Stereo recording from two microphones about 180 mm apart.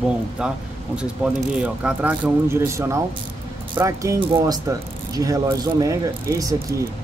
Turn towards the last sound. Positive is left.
turn(degrees=-15)  # may be behind; listen again after turning